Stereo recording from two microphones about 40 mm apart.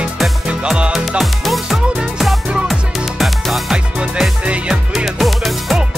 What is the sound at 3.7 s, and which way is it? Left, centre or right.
Music, right.